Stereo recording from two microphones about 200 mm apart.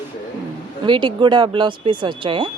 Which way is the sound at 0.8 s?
25° right (ahead or behind).